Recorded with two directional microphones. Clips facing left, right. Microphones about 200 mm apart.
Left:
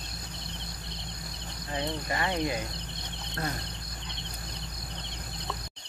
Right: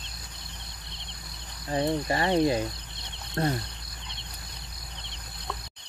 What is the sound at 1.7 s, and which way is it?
Speech, 35° right (ahead or behind).